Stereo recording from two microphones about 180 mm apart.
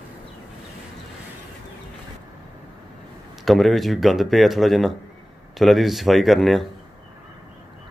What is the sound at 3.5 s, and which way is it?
Speech, centre (ahead or behind).